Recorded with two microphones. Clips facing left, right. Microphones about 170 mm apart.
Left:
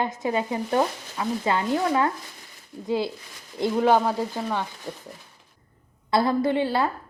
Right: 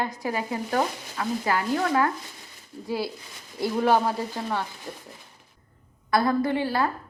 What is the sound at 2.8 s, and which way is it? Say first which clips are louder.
A woman's voice: left 4 dB; 20° left (ahead or behind).